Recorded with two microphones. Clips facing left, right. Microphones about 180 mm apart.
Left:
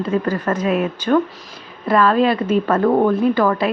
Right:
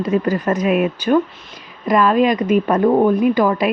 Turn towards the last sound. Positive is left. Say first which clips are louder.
# right 1 dB
turn(degrees=-15)  # may be behind; listen again after turning